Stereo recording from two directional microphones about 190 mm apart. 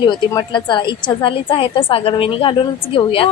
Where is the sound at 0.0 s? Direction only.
25° left (ahead or behind).